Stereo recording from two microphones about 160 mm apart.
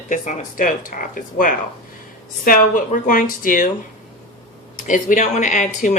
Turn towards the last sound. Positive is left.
turn(degrees=50)  # may be behind; listen again after turning